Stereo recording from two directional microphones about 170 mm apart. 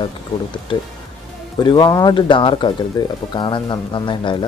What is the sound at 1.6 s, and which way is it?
Speech, 25° left (ahead or behind).